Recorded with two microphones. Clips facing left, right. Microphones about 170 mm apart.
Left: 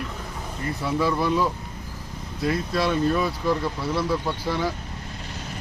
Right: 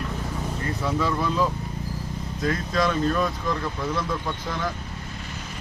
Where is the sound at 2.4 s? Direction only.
5° left (ahead or behind).